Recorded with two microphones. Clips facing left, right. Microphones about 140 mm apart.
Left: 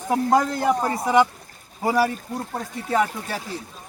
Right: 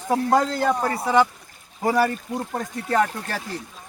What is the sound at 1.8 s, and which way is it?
Speech, 5° left (ahead or behind).